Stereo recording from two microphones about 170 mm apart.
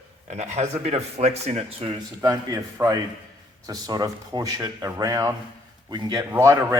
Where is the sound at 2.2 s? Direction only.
20° right (ahead or behind).